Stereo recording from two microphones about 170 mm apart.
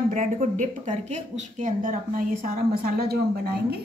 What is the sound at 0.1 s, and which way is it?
Speech, 50° right (ahead or behind).